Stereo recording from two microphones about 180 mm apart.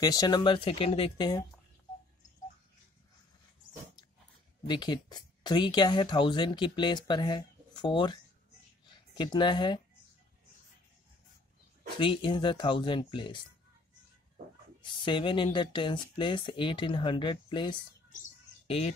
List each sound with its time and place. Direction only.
0.0 s speech: 20° left (ahead or behind)
3.6 s dog: 50° left (ahead or behind)
4.6 s speech: 25° left (ahead or behind)
8.8 s a sound: 25° left (ahead or behind)
12.0 s speech: 25° left (ahead or behind)
14.8 s speech: 25° left (ahead or behind)